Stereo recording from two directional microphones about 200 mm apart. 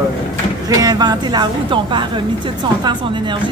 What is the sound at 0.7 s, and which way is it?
A woman's voice, 20° right (ahead or behind).